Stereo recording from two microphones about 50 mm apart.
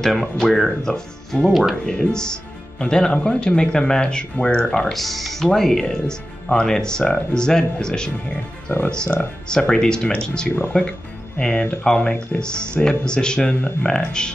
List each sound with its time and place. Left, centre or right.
0.0 s speech: centre
1.5 s speech: centre
1.9 s speech: centre